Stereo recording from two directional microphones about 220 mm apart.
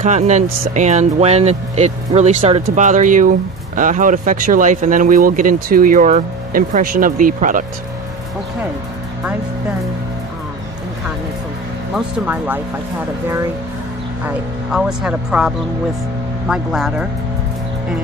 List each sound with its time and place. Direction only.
0.0 s speech: 30° right (ahead or behind)
11.9 s speech: 10° right (ahead or behind)
14.2 s speech: 5° right (ahead or behind)